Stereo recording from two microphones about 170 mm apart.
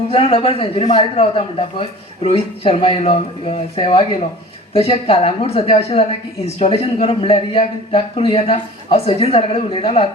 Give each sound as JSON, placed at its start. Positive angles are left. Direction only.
{"t": 0.1, "sound": "a man's voice", "side_deg": 35}